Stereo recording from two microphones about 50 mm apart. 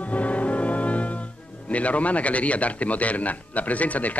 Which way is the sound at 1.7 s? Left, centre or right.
Left.